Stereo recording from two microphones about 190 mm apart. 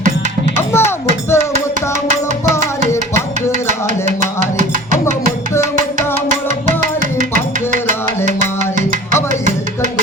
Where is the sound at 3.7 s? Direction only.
40° right (ahead or behind).